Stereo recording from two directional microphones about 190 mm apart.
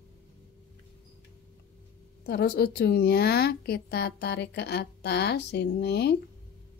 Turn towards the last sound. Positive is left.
turn(degrees=60)  # may be behind; listen again after turning